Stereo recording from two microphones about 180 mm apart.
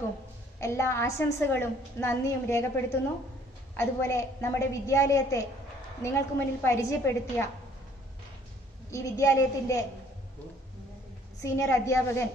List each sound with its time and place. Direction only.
0.6 s a woman's voice: 15° left (ahead or behind)
3.7 s a woman's voice: 15° left (ahead or behind)
8.9 s a woman's voice: 15° left (ahead or behind)
11.4 s a woman's voice: 15° left (ahead or behind)